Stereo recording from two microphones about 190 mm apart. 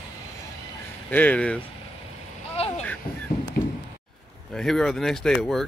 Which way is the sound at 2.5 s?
30° left (ahead or behind).